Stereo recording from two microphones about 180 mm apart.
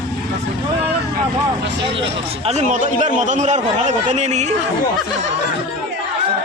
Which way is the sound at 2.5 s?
40° right (ahead or behind).